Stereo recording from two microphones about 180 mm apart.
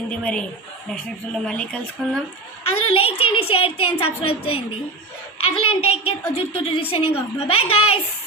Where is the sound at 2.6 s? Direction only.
30° left (ahead or behind).